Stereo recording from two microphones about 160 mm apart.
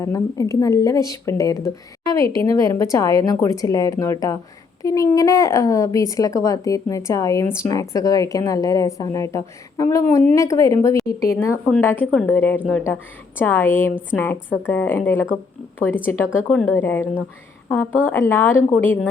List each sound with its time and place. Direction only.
0.0 s a woman's voice: 20° left (ahead or behind)
16.5 s a woman's voice: 5° left (ahead or behind)